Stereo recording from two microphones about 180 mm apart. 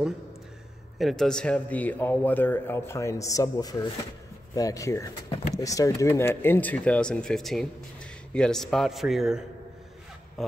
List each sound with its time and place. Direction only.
0.9 s a man's voice: centre (ahead or behind)